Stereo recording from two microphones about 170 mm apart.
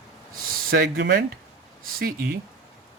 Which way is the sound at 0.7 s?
65° right (ahead or behind).